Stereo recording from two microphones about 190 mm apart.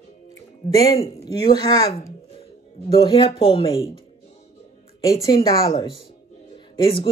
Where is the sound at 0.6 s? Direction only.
25° left (ahead or behind).